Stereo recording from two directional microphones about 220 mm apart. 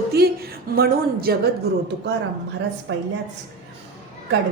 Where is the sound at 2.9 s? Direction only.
55° right (ahead or behind).